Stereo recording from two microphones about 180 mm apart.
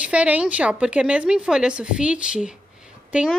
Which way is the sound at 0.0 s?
5° right (ahead or behind).